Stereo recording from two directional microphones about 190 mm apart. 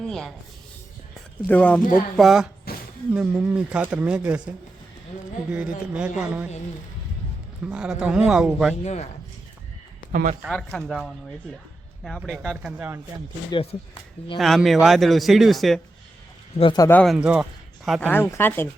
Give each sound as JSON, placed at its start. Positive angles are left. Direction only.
{"t": 0.0, "sound": "a man's voice", "side_deg": 0}
{"t": 1.5, "sound": "a man's voice", "side_deg": 5}
{"t": 7.6, "sound": "a man's voice", "side_deg": -5}
{"t": 8.8, "sound": "a man's voice", "side_deg": 35}
{"t": 10.1, "sound": "a man's voice", "side_deg": -45}
{"t": 10.4, "sound": "a man's voice", "side_deg": 0}
{"t": 13.5, "sound": "speech", "side_deg": 30}
{"t": 14.3, "sound": "a man's voice", "side_deg": 0}
{"t": 16.6, "sound": "speech", "side_deg": 25}
{"t": 16.9, "sound": "a man's voice", "side_deg": 5}
{"t": 17.2, "sound": "a man's voice", "side_deg": -5}
{"t": 18.1, "sound": "speech", "side_deg": 10}